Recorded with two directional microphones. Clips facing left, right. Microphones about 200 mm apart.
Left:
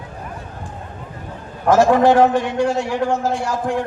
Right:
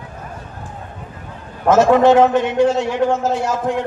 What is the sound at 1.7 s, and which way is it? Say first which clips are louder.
A man's voice: right 2 dB; 20° right (ahead or behind).